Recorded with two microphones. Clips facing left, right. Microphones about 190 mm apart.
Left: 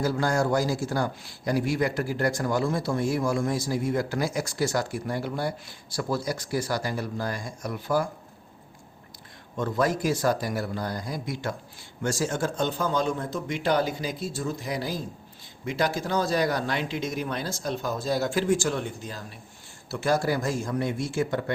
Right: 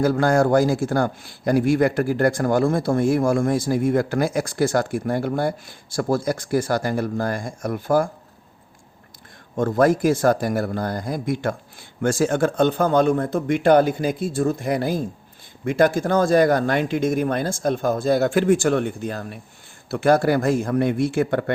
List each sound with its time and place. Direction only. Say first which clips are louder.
0.0 s a man's voice: right 7 dB; 55° right (ahead or behind)
9.6 s a man's voice: right 8 dB; 50° right (ahead or behind)